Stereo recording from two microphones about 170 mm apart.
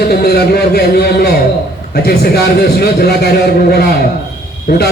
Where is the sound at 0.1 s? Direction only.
65° left (ahead or behind).